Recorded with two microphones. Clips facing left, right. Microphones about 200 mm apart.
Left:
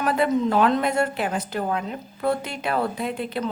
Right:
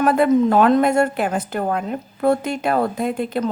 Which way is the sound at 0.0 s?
50° right (ahead or behind).